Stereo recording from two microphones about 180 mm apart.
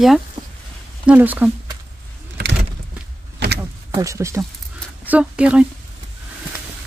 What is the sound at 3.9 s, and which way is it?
A woman's voice, 15° right (ahead or behind).